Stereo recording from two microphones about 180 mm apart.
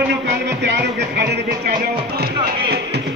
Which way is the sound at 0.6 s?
70° right (ahead or behind).